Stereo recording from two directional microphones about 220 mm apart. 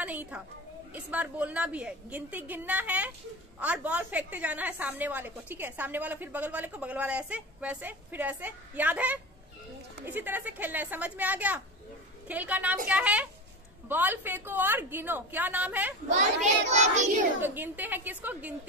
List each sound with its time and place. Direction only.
0.0 s a woman's voice: 5° right (ahead or behind)
16.7 s child singing: 30° right (ahead or behind)
17.4 s a woman's voice: 10° right (ahead or behind)